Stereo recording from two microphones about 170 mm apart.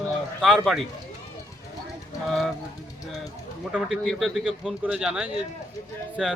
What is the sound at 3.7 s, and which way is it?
Speech, centre (ahead or behind).